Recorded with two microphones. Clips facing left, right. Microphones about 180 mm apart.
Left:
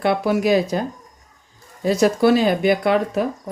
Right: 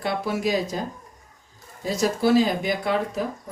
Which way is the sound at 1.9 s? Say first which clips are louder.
Left 5 dB; 65° left (ahead or behind).